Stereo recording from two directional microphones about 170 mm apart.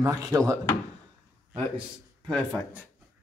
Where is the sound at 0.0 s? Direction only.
20° right (ahead or behind).